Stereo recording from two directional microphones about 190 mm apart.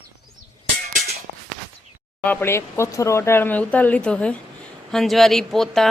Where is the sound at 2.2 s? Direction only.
10° left (ahead or behind).